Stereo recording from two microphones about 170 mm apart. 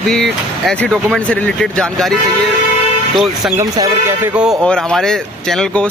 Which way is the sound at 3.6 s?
20° right (ahead or behind).